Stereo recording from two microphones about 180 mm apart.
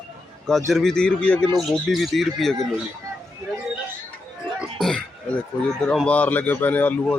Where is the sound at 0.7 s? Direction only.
Centre (ahead or behind).